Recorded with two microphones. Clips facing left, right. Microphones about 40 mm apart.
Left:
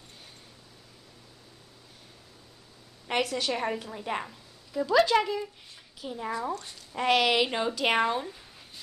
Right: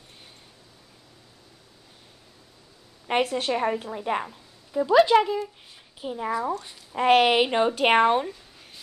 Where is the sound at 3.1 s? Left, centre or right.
Right.